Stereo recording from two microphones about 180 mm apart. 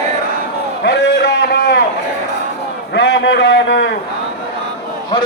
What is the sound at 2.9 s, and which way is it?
A man's voice, 75° left (ahead or behind).